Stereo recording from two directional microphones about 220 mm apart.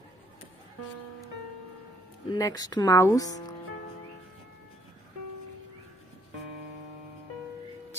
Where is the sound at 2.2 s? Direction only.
15° left (ahead or behind).